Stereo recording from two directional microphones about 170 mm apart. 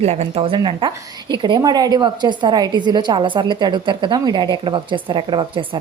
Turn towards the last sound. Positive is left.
turn(degrees=-30)  # may be behind; listen again after turning